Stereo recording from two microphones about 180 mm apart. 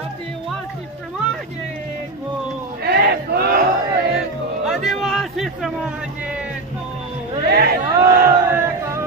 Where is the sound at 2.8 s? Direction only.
60° right (ahead or behind).